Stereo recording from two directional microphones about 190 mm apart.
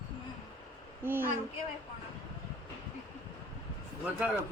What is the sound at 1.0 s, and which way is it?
Speech, 10° right (ahead or behind).